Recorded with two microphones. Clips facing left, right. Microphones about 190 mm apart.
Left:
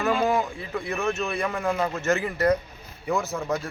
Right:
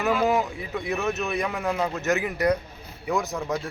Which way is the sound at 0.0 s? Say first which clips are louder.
Right 1 dB; 5° right (ahead or behind).